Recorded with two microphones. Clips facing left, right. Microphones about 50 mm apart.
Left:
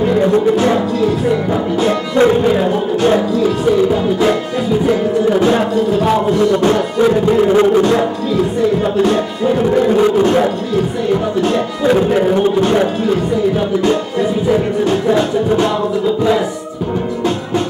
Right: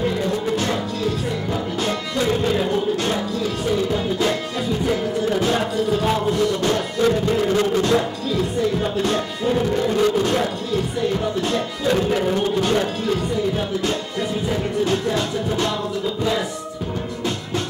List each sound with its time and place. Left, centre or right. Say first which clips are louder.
0.2 s music: left 10 dB; left
9.0 s music: left 7 dB; left
11.4 s music: left 7 dB; left
14.5 s music: left 6 dB; left